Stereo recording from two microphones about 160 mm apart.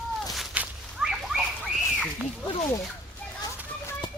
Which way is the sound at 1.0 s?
Centre (ahead or behind).